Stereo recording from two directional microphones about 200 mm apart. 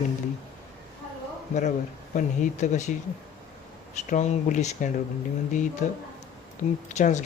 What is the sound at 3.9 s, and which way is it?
Speech, 35° left (ahead or behind).